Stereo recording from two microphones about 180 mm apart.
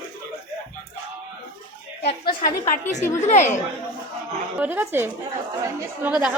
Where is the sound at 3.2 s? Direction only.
40° left (ahead or behind).